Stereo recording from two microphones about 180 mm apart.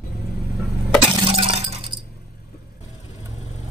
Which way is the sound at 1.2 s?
30° right (ahead or behind).